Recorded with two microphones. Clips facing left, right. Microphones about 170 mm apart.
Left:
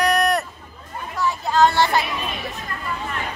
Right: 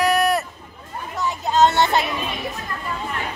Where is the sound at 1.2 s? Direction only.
20° right (ahead or behind).